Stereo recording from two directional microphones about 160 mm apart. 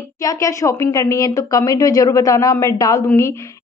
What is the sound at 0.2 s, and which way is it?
A woman's voice, 20° left (ahead or behind).